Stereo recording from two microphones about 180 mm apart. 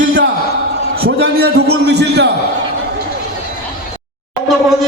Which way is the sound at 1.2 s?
65° right (ahead or behind).